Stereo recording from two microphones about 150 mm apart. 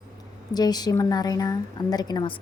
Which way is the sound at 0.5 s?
25° left (ahead or behind).